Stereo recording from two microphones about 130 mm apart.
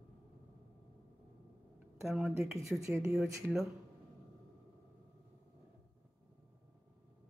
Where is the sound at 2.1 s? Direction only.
Centre (ahead or behind).